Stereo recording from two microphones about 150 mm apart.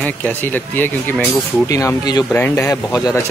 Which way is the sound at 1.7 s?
20° left (ahead or behind).